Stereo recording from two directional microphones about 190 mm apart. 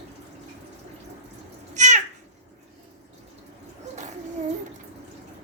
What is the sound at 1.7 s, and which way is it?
Cat, 40° right (ahead or behind).